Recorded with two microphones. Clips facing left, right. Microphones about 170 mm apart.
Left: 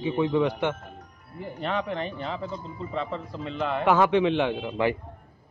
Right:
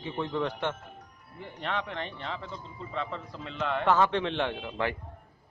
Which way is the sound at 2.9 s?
Centre (ahead or behind).